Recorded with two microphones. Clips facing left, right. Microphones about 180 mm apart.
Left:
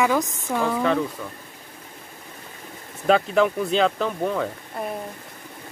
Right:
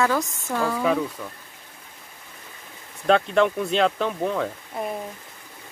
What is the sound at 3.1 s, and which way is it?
Speech, 5° left (ahead or behind).